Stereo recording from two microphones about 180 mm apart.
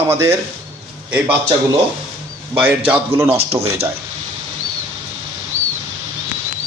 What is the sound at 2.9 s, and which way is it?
Speech, 15° right (ahead or behind).